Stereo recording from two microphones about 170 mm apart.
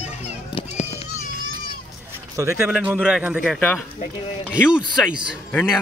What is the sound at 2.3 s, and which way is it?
Speech, 15° right (ahead or behind).